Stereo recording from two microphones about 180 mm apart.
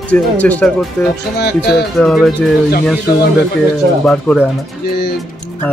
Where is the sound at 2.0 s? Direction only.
Centre (ahead or behind).